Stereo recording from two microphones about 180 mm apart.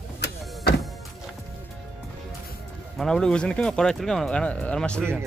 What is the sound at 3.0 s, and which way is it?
Speech, 5° left (ahead or behind).